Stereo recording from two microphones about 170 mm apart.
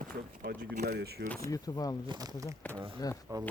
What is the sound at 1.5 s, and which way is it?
Speech, 20° left (ahead or behind).